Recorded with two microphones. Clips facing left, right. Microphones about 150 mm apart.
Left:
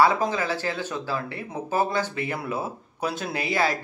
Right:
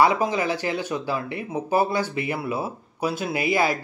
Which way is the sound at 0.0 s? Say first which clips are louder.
Right 1 dB; 15° right (ahead or behind).